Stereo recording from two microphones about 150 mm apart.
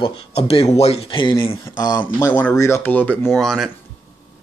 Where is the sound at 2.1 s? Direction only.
10° left (ahead or behind).